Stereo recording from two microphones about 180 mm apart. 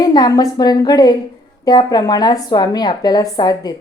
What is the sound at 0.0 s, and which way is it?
Speech, 25° left (ahead or behind).